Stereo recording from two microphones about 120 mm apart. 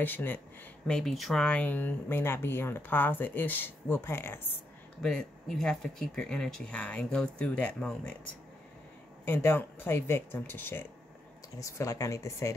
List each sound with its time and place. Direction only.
0.0 s speech: 15° left (ahead or behind)
0.8 s speech: 5° left (ahead or behind); by 4.6 s 20° left (ahead or behind)
5.0 s speech: 5° left (ahead or behind)
9.2 s speech: 20° left (ahead or behind)